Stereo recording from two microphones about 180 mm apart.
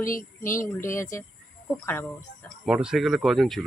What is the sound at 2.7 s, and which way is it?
Speech, 5° right (ahead or behind).